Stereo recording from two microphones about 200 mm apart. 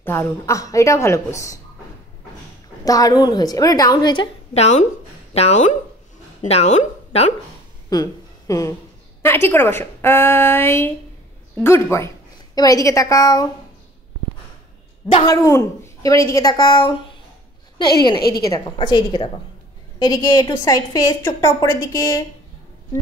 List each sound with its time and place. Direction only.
0.0 s a woman's voice: 15° left (ahead or behind)
2.8 s a woman's voice: 20° left (ahead or behind)
7.9 s a woman's voice: 15° left (ahead or behind)
15.2 s a woman's voice: 15° left (ahead or behind)
18.3 s a woman's voice: 50° left (ahead or behind)
18.8 s a woman's voice: 25° left (ahead or behind)